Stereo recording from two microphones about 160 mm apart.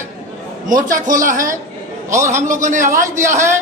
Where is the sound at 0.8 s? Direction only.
55° right (ahead or behind).